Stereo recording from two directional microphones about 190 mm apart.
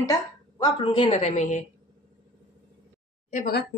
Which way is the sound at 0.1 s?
20° left (ahead or behind).